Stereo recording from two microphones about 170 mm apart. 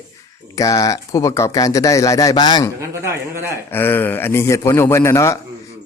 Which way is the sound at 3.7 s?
10° left (ahead or behind).